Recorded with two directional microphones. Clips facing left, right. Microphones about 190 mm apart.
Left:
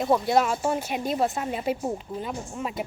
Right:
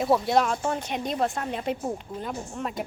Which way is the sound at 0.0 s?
Centre (ahead or behind).